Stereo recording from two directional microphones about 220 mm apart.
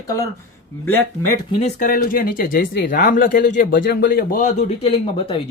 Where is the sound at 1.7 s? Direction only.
40° left (ahead or behind).